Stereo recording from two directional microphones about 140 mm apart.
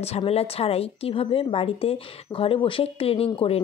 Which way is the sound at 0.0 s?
45° left (ahead or behind).